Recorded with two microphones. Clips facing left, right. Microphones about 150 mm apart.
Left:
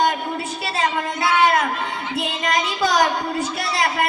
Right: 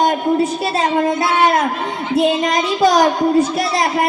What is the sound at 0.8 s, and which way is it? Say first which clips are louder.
Speech: right 6 dB; 45° right (ahead or behind).